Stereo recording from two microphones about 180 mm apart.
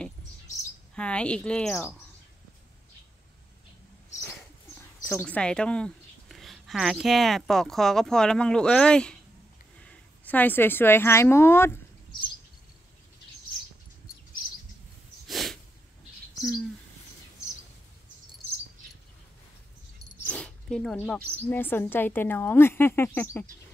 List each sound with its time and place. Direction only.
0.9 s speech: 5° left (ahead or behind)
5.0 s a woman's voice: 10° left (ahead or behind)
15.2 s sneeze: centre (ahead or behind)
20.2 s a sound: 5° left (ahead or behind)
21.5 s speech: 10° left (ahead or behind)